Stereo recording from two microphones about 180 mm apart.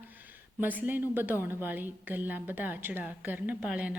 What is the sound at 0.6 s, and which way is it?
A woman's voice, 10° right (ahead or behind).